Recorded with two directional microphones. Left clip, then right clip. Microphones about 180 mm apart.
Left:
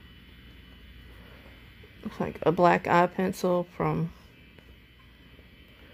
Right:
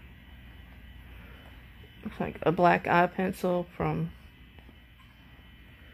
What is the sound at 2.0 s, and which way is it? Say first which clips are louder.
Speech: left 2 dB; 10° left (ahead or behind).